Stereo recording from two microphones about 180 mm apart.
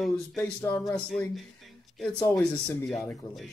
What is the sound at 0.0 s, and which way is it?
Speech, centre (ahead or behind).